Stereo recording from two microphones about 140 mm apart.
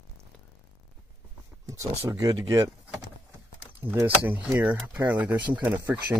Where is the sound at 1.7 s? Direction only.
25° right (ahead or behind).